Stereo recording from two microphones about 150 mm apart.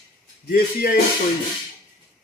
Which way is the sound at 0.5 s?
90° left.